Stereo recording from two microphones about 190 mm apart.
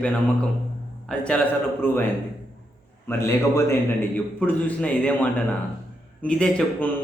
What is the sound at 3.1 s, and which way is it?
A man's voice, 15° left (ahead or behind).